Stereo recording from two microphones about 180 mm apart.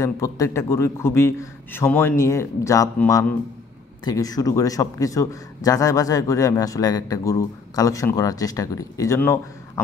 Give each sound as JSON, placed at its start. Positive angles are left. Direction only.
{"t": 0.0, "sound": "a man's voice", "side_deg": 15}
{"t": 4.0, "sound": "a man's voice", "side_deg": 20}